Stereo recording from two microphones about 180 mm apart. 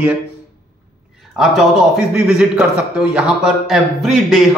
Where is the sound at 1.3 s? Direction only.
Centre (ahead or behind).